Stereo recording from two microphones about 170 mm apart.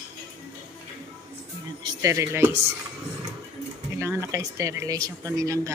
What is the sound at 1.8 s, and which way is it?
Speech, 20° right (ahead or behind).